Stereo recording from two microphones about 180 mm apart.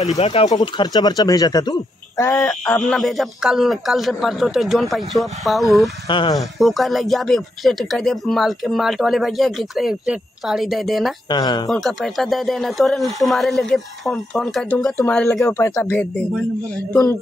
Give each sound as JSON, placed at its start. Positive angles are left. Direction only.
{"t": 0.2, "sound": "speech", "side_deg": 30}
{"t": 0.5, "sound": "speech", "side_deg": 20}
{"t": 2.6, "sound": "speech", "side_deg": 5}
{"t": 6.0, "sound": "speech", "side_deg": 25}
{"t": 6.6, "sound": "speech", "side_deg": 0}
{"t": 11.2, "sound": "speech", "side_deg": 25}
{"t": 11.7, "sound": "speech", "side_deg": 0}